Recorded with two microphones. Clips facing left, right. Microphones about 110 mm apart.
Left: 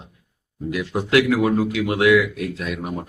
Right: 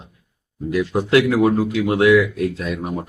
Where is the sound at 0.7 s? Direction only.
25° right (ahead or behind).